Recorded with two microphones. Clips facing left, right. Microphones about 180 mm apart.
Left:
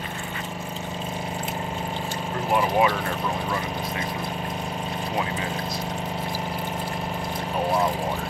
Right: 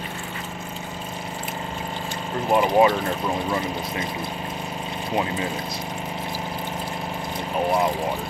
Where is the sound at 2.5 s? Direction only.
25° right (ahead or behind).